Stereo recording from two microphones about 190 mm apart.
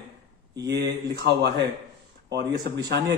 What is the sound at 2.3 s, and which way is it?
Speech, 65° right (ahead or behind).